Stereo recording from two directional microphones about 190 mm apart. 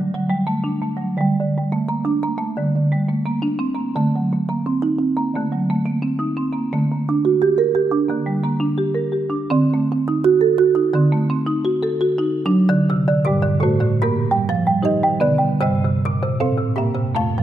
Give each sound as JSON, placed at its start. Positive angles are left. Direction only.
{"t": 7.3, "sound": "music", "side_deg": -35}
{"t": 10.2, "sound": "music", "side_deg": -30}
{"t": 11.6, "sound": "music", "side_deg": 0}
{"t": 14.8, "sound": "music", "side_deg": 0}